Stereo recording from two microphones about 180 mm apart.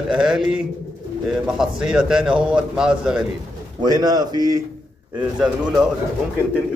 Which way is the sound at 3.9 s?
20° right (ahead or behind).